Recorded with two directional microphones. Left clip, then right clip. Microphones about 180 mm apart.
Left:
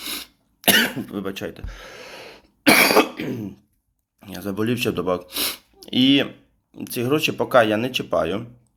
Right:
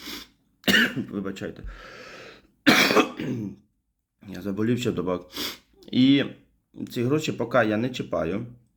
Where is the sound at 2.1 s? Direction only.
60° left (ahead or behind).